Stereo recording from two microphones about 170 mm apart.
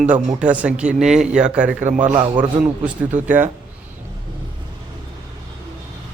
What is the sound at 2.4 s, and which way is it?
Speech, 10° right (ahead or behind).